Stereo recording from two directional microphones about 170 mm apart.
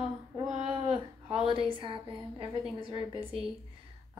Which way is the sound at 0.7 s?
30° right (ahead or behind).